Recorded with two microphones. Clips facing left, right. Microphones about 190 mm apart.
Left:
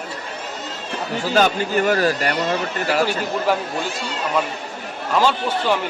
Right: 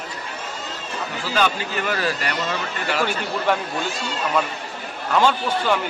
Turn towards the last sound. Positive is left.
turn(degrees=0)  # may be behind; listen again after turning